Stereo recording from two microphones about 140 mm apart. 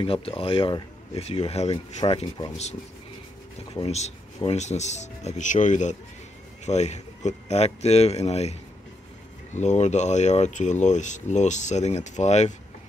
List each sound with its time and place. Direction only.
0.0 s speech: 40° left (ahead or behind)
3.7 s speech: 50° left (ahead or behind)